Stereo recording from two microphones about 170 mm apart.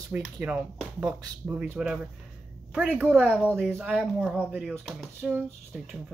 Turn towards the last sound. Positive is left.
turn(degrees=0)  # may be behind; listen again after turning